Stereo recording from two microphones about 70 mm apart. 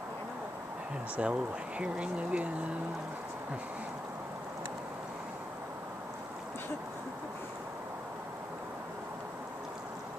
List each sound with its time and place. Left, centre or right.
1.1 s speech: centre